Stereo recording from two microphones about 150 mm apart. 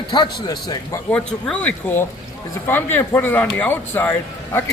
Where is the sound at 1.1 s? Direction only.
10° left (ahead or behind).